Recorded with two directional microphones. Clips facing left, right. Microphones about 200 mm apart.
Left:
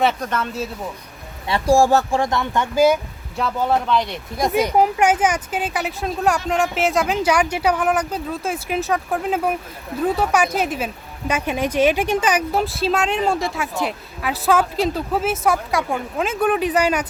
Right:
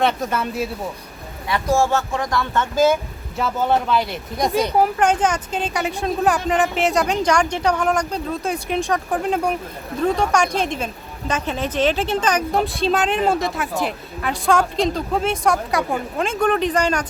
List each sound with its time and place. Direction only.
0.0 s a woman's voice: centre (ahead or behind)
0.3 s speech: 10° right (ahead or behind)
1.5 s speech: 30° left (ahead or behind); by 3.0 s 10° left (ahead or behind)
3.3 s a woman's voice: centre (ahead or behind)